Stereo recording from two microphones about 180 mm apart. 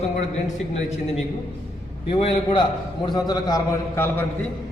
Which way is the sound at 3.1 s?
20° left (ahead or behind).